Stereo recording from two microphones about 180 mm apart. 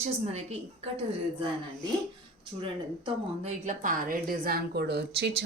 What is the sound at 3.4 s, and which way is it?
A woman's voice, 45° right (ahead or behind).